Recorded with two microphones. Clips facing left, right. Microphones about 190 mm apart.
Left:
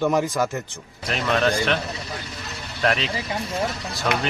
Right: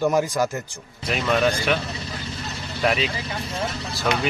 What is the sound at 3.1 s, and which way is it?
Speech, 30° left (ahead or behind).